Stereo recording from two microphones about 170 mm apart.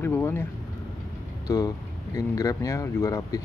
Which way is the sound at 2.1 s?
20° left (ahead or behind).